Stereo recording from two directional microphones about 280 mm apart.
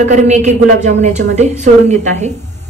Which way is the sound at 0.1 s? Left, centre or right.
Right.